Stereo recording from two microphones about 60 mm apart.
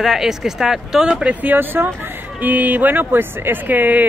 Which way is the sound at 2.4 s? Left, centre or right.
Right.